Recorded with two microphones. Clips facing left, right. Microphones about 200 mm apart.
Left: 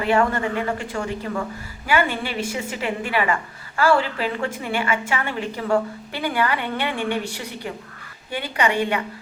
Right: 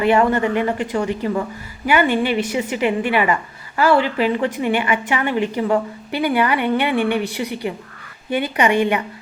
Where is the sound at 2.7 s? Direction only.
15° right (ahead or behind).